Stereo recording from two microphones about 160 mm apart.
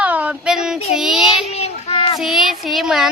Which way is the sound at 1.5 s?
40° left (ahead or behind).